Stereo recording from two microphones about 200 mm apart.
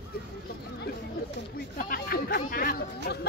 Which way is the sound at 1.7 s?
45° left (ahead or behind).